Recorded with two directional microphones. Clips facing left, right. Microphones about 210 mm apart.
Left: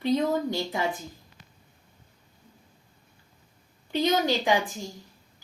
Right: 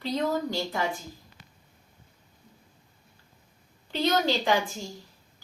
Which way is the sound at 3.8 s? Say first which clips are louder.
Left 1 dB; 15° left (ahead or behind).